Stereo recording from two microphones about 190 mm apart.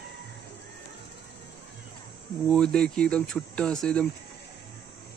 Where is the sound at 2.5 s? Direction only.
5° left (ahead or behind).